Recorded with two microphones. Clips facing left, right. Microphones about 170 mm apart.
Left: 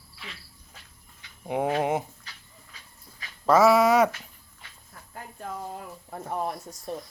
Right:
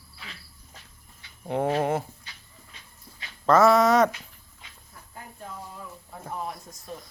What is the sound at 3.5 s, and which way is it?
Speech, 10° left (ahead or behind).